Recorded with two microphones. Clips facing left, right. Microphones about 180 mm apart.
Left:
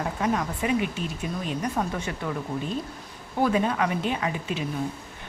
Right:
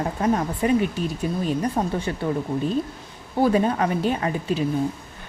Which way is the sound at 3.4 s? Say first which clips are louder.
Right 4 dB; 35° right (ahead or behind).